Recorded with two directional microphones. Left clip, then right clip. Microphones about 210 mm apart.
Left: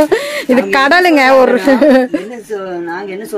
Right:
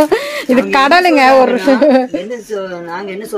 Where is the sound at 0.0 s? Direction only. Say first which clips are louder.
Left 1 dB; 5° left (ahead or behind).